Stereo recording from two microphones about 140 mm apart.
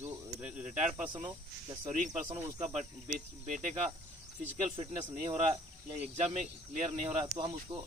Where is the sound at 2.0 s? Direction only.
60° right (ahead or behind).